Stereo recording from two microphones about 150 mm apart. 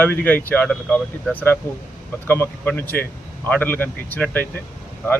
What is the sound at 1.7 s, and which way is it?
Speech, 15° left (ahead or behind).